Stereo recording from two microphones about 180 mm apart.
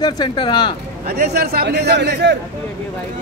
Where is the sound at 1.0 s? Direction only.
60° right (ahead or behind).